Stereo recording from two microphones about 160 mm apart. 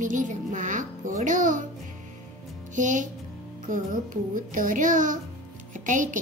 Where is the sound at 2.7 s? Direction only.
50° right (ahead or behind).